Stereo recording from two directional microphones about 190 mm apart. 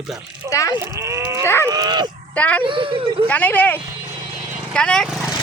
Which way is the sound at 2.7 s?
25° right (ahead or behind).